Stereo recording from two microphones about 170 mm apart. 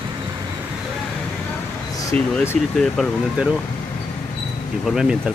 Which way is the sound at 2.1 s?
5° left (ahead or behind).